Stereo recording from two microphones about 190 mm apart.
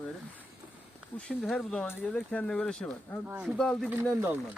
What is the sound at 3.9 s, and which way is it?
Speech, 10° right (ahead or behind).